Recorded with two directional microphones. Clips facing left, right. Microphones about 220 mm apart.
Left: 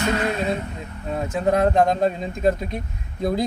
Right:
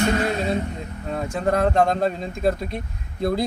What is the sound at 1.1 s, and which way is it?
Speech, 5° left (ahead or behind).